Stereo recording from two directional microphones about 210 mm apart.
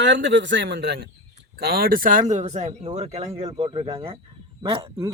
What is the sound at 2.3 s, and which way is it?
Speech, 35° right (ahead or behind).